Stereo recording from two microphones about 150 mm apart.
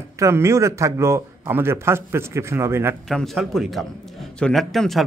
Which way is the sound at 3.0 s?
Centre (ahead or behind).